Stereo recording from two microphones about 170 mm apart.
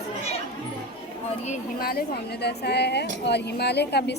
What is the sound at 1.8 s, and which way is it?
A woman's voice, 65° left (ahead or behind).